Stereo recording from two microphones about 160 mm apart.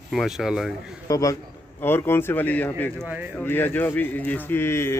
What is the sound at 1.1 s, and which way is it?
Speech, 20° left (ahead or behind).